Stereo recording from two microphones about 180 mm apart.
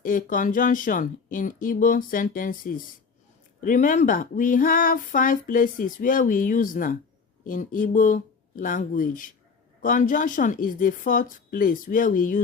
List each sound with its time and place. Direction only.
0.0 s speech: 50° left (ahead or behind)